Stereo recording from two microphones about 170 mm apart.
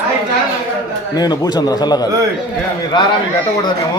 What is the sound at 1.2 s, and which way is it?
A man's voice, 25° left (ahead or behind).